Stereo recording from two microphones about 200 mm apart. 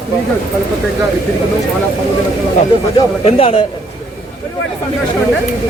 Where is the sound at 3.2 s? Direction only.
30° left (ahead or behind).